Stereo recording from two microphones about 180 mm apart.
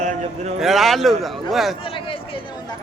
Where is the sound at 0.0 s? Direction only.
40° right (ahead or behind).